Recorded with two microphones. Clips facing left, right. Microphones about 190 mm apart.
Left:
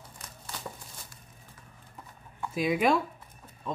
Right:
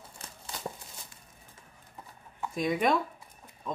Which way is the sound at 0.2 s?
30° right (ahead or behind).